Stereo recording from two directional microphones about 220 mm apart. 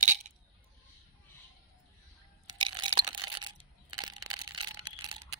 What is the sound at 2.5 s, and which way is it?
Crunch, 20° right (ahead or behind).